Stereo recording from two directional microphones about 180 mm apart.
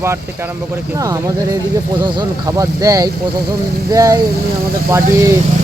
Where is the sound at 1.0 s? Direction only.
20° right (ahead or behind).